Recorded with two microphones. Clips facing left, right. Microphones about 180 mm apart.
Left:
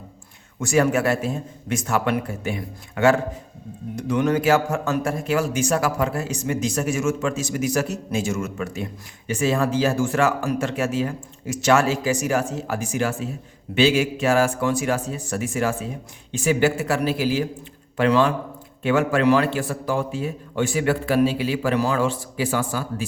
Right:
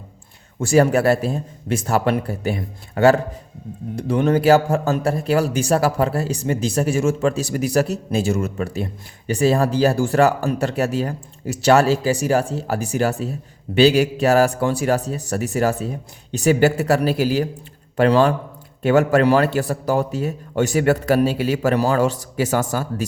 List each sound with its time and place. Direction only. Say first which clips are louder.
0.6 s a man's voice: right 4 dB; 35° right (ahead or behind)